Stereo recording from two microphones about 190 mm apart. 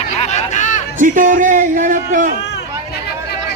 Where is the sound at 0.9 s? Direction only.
45° right (ahead or behind).